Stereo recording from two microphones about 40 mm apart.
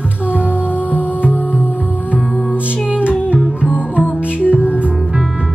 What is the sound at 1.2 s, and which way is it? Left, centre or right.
Music, left.